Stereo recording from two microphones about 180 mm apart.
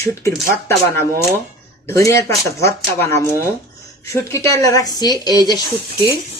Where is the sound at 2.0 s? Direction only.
15° left (ahead or behind).